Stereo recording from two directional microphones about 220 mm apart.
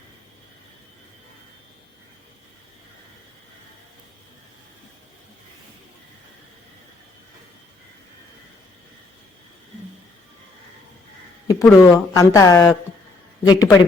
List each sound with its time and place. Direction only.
11.4 s speech: 15° left (ahead or behind)